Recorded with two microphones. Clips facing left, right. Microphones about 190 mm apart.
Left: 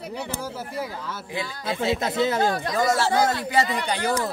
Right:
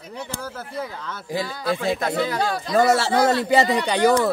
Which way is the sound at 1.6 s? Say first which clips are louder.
Even; 20° left (ahead or behind).